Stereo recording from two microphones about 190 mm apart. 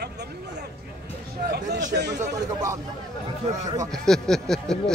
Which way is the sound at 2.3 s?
15° right (ahead or behind).